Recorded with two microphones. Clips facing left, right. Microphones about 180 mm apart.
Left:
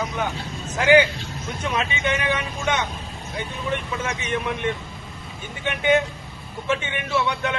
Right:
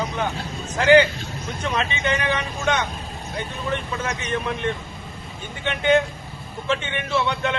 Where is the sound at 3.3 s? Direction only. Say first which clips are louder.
Even; 10° left (ahead or behind).